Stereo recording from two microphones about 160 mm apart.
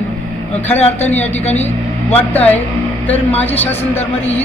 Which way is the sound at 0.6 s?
45° left (ahead or behind).